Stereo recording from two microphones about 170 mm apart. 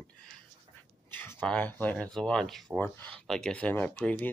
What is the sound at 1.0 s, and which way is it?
Speech, 15° left (ahead or behind).